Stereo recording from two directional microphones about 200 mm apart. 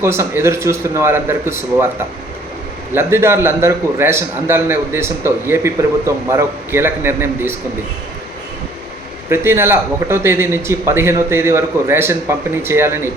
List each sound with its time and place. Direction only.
0.0 s a man's voice: 15° right (ahead or behind)
2.9 s a man's voice: 10° right (ahead or behind)
9.3 s a man's voice: 10° right (ahead or behind)